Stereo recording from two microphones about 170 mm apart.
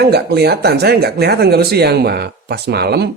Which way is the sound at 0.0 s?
70° right (ahead or behind).